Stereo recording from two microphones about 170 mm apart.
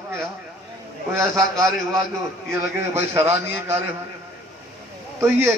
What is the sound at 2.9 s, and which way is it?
Speech, 15° right (ahead or behind).